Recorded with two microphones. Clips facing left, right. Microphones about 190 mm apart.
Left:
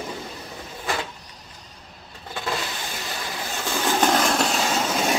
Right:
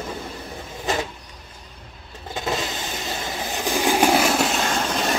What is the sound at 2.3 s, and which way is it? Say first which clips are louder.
Vehicle: right 3 dB; 20° right (ahead or behind).